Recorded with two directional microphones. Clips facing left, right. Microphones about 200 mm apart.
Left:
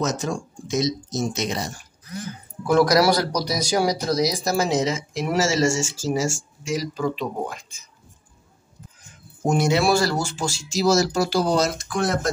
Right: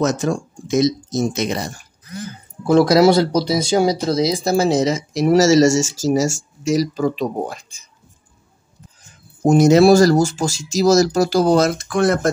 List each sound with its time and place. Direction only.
0.0 s speech: 60° right (ahead or behind)
2.6 s speech: 25° right (ahead or behind)
9.4 s speech: 40° right (ahead or behind); by 12.3 s 55° right (ahead or behind)